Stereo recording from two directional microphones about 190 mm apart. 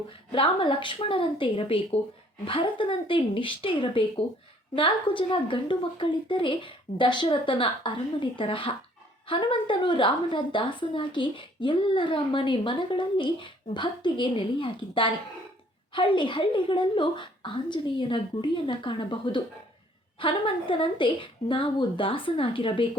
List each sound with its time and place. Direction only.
0.3 s a woman's voice: 30° left (ahead or behind)